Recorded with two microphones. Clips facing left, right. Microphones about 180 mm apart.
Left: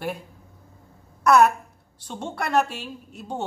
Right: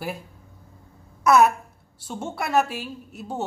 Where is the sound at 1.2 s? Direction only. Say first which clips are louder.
Even; 5° right (ahead or behind).